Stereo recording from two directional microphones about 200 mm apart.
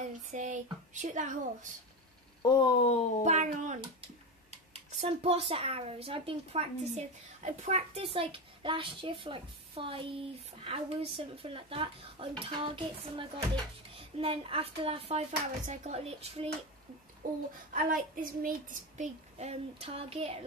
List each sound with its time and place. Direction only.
0.3 s a child's voice: 40° right (ahead or behind)
2.4 s speech: 20° left (ahead or behind)
3.3 s a child's voice: 35° right (ahead or behind)
17.2 s a child's voice: 40° right (ahead or behind)